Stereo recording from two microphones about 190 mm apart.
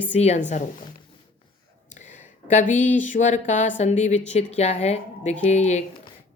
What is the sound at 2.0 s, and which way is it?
Speech, 40° left (ahead or behind).